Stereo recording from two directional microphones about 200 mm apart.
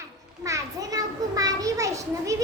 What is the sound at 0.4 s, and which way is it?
A child's voice, 15° right (ahead or behind).